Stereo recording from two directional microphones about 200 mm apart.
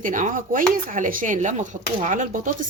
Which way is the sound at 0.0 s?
40° right (ahead or behind).